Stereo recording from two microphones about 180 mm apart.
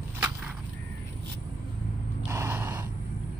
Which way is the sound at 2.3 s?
15° right (ahead or behind).